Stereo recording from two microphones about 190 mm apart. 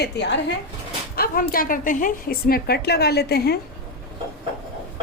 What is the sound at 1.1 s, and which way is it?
A woman's voice, 50° left (ahead or behind).